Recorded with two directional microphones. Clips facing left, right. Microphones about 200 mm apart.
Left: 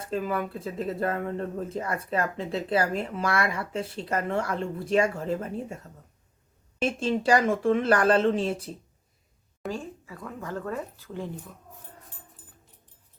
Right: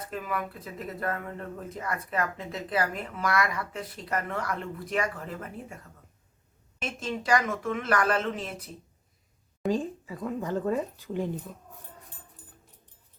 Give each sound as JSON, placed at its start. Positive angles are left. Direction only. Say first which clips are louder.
{"t": 0.0, "sound": "speech", "louder": "left 5 dB", "side_deg": 30}
{"t": 9.6, "sound": "speech", "louder": "right 6 dB", "side_deg": -20}